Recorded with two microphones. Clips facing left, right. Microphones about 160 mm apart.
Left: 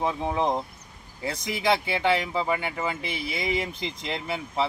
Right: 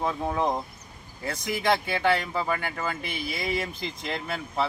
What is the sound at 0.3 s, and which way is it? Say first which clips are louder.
Speech: left 1 dB; 20° left (ahead or behind).